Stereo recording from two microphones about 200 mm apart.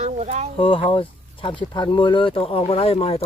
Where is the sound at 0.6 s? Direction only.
25° left (ahead or behind).